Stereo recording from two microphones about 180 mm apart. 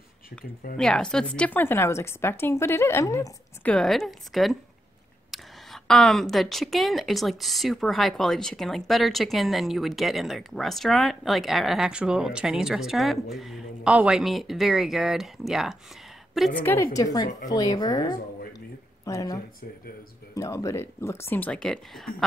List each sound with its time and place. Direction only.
0.7 s a woman's voice: 5° left (ahead or behind)
3.7 s speech: centre (ahead or behind)
16.6 s a woman's voice: 15° left (ahead or behind)